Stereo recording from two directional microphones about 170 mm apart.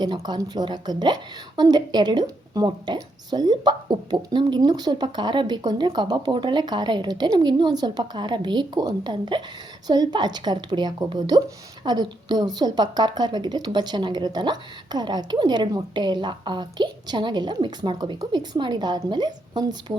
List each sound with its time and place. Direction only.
0.0 s speech: 25° right (ahead or behind)